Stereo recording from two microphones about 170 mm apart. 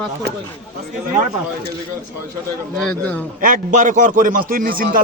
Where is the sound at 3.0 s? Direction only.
10° left (ahead or behind).